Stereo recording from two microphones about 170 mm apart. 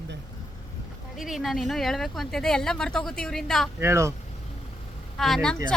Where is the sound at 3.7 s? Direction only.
15° right (ahead or behind).